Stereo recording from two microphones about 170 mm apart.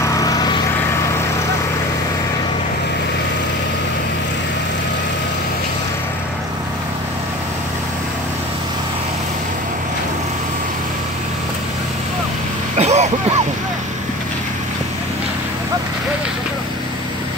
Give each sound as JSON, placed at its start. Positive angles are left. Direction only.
{"t": 0.0, "sound": "vehicle", "side_deg": 20}
{"t": 12.7, "sound": "vehicle", "side_deg": -40}